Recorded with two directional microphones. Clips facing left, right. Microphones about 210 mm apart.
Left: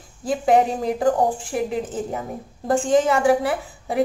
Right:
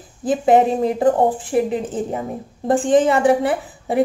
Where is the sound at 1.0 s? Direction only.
20° right (ahead or behind).